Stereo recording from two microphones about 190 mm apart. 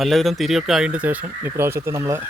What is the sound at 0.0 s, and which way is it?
Speech, centre (ahead or behind).